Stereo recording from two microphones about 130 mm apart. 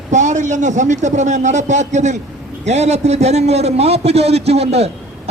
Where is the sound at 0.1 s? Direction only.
65° right (ahead or behind).